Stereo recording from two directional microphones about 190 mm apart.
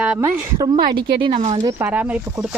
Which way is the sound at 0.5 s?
20° right (ahead or behind).